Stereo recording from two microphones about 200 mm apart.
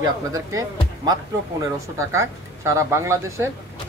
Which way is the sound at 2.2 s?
15° right (ahead or behind).